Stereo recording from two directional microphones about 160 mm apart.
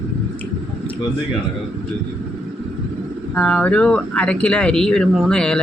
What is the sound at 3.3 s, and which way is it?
Speech, 10° left (ahead or behind).